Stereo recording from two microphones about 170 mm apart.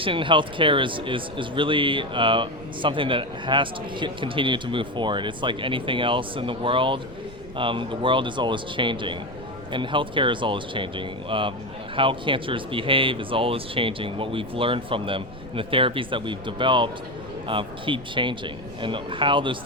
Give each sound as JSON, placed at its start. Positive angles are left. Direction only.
{"t": 0.0, "sound": "speech", "side_deg": -30}